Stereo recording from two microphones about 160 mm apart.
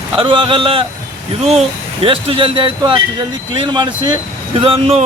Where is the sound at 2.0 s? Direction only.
35° right (ahead or behind).